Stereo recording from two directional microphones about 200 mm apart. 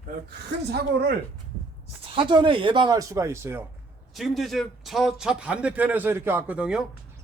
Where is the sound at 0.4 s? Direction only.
55° right (ahead or behind).